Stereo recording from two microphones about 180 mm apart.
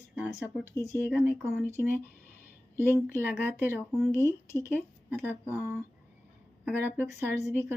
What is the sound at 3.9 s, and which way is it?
Speech, 5° left (ahead or behind).